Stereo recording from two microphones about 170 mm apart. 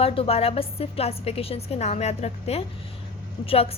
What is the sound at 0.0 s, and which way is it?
A woman's voice, 35° left (ahead or behind).